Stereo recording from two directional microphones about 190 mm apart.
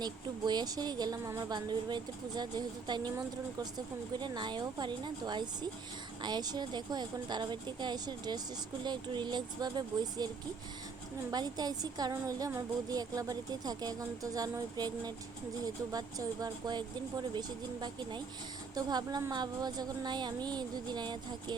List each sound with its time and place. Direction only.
0.0 s a woman's voice: 20° right (ahead or behind)
11.3 s a woman's voice: 20° right (ahead or behind)